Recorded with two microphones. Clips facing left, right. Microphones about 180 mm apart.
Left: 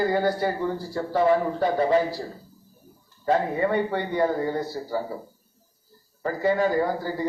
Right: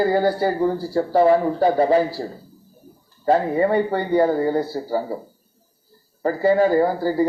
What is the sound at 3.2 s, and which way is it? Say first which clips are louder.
A man's voice: right 5 dB; 35° right (ahead or behind).